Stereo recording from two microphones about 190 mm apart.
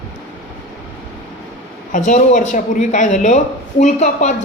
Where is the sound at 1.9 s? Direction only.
40° left (ahead or behind).